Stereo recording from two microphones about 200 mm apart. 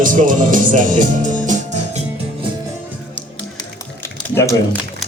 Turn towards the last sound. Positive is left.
turn(degrees=15)  # may be behind; listen again after turning